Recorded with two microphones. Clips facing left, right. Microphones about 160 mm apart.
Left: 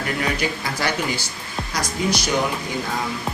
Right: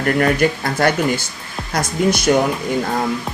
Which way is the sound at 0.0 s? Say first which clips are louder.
Right 8 dB; 55° right (ahead or behind).